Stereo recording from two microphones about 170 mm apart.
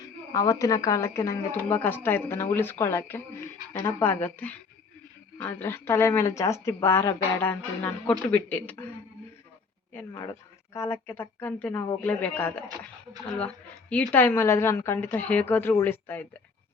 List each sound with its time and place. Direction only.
0.0 s speech: 20° left (ahead or behind)
10.8 s speech: 15° left (ahead or behind)
13.9 s speech: 10° left (ahead or behind)